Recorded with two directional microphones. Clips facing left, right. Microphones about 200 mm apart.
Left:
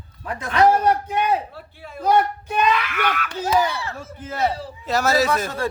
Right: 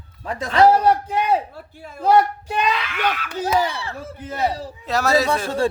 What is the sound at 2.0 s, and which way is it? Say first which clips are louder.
A man's voice: right 2 dB; 30° right (ahead or behind).